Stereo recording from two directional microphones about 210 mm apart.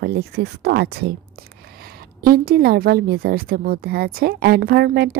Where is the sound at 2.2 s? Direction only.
45° right (ahead or behind).